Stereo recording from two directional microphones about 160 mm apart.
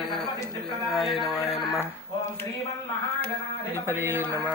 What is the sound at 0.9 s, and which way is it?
Speech, centre (ahead or behind).